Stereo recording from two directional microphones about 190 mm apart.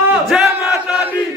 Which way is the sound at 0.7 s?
10° right (ahead or behind).